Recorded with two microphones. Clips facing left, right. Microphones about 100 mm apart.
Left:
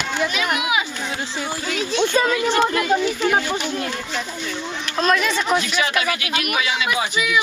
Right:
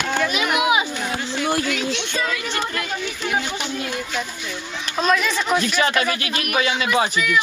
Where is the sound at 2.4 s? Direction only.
25° left (ahead or behind).